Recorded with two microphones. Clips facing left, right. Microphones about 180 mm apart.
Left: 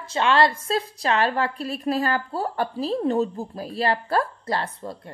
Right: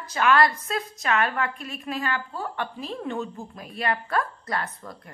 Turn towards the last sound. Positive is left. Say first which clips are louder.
# left 4 dB
turn(degrees=30)  # may be behind; listen again after turning